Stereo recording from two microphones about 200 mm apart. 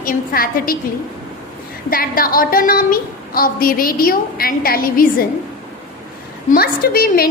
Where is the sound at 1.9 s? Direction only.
45° left (ahead or behind).